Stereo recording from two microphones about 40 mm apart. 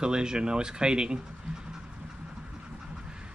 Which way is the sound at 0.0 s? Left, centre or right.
Right.